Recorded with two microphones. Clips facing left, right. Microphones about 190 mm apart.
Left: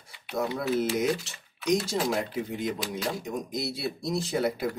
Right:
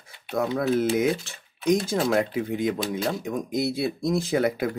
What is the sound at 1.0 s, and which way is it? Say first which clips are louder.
Speech: right 3 dB; 55° right (ahead or behind).